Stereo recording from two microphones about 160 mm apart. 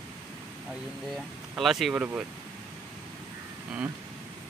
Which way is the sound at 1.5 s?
Centre (ahead or behind).